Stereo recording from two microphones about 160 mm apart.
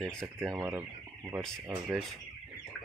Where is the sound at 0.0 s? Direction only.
5° left (ahead or behind).